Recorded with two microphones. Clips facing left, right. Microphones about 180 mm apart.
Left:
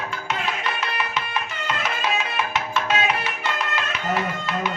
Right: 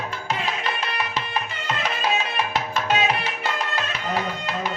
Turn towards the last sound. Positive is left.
turn(degrees=-30)  # may be behind; listen again after turning